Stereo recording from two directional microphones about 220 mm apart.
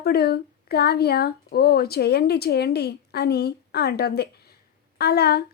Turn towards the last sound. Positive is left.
turn(degrees=45)  # may be behind; listen again after turning